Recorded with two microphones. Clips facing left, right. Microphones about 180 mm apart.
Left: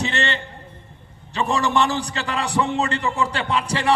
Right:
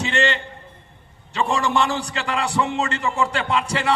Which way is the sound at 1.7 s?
35° left (ahead or behind).